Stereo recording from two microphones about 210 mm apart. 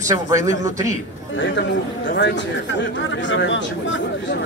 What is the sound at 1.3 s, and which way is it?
A man's voice, 60° left (ahead or behind).